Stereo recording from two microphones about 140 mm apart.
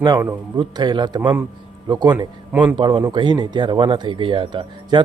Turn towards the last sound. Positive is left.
turn(degrees=-35)  # may be behind; listen again after turning